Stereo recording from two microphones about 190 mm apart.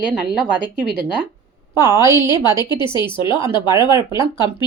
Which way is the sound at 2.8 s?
25° left (ahead or behind).